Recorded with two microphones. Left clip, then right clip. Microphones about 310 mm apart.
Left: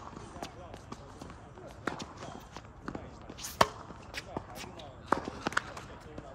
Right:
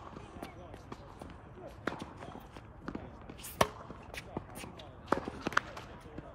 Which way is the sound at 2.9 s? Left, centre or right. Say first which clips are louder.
Left 2 dB; centre.